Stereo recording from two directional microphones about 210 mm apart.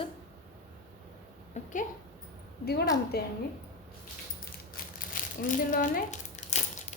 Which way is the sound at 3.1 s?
50° left (ahead or behind).